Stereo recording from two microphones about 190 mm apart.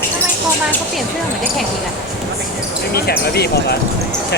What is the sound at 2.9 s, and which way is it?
Speech, 55° left (ahead or behind).